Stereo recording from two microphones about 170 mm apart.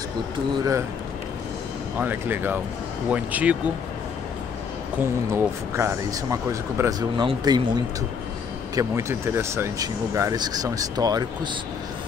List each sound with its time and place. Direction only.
2.0 s speech: 10° right (ahead or behind)
4.9 s speech: 15° right (ahead or behind)